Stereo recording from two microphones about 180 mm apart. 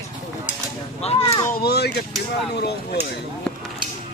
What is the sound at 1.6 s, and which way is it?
Speech, 60° left (ahead or behind).